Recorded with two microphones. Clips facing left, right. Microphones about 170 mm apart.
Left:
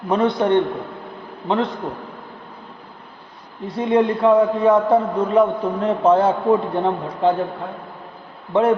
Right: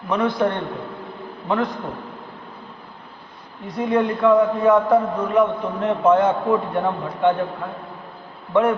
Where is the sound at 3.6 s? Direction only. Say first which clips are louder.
Left 3 dB; 30° left (ahead or behind).